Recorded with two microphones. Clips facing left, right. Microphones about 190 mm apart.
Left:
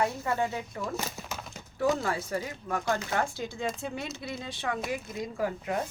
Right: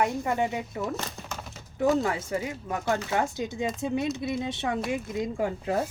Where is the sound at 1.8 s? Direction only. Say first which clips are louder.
Right 3 dB; 20° right (ahead or behind).